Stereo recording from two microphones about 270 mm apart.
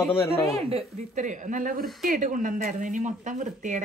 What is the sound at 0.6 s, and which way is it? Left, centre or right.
Speech, right.